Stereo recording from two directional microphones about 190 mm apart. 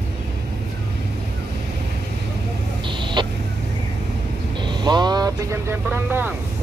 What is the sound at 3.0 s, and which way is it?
Vehicle, 25° right (ahead or behind).